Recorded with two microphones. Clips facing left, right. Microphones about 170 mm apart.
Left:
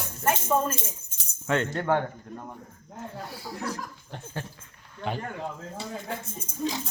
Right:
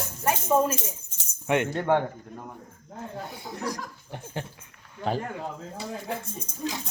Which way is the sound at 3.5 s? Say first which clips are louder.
Right 1 dB; 15° right (ahead or behind).